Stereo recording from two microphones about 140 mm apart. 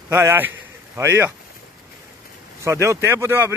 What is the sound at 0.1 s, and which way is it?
A man's voice, 15° right (ahead or behind).